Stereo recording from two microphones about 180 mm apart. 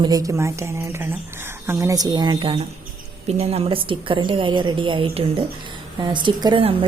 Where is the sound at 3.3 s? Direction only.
35° right (ahead or behind).